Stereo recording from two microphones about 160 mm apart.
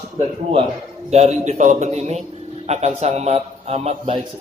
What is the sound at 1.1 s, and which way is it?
A man's voice, 45° right (ahead or behind).